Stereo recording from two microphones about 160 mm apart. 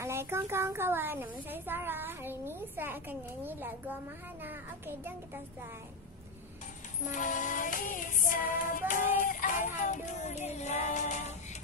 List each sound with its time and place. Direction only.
0.0 s a woman's voice: 15° right (ahead or behind)
7.2 s music: 55° left (ahead or behind)